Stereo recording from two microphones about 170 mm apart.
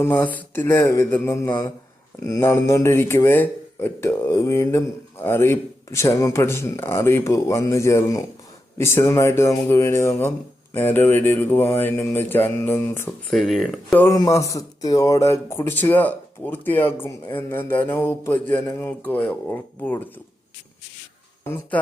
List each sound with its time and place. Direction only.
0.0 s speech: 10° left (ahead or behind)
13.3 s speech: centre (ahead or behind)
13.9 s speech: 15° left (ahead or behind)
21.4 s speech: 10° left (ahead or behind)